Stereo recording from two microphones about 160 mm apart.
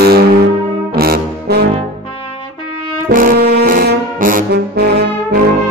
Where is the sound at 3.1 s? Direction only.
55° right (ahead or behind); by 5.0 s 85° right.